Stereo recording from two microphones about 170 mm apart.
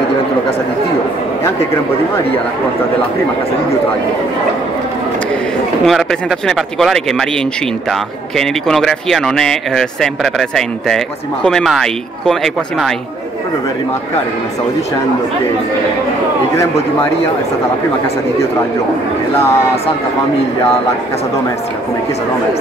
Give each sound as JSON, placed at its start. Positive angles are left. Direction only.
{"t": 5.9, "sound": "speech", "side_deg": 0}
{"t": 8.4, "sound": "speech", "side_deg": 0}
{"t": 19.3, "sound": "speech", "side_deg": 15}